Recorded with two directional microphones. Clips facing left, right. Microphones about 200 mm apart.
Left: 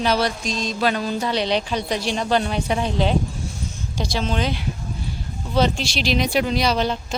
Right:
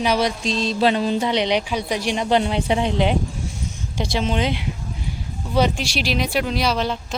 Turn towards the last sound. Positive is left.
turn(degrees=0)  # may be behind; listen again after turning